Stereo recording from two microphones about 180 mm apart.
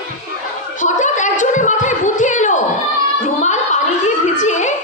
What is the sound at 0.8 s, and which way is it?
Gargling, 45° left (ahead or behind).